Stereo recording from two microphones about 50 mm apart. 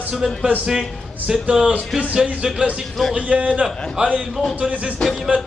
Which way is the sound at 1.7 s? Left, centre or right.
Right.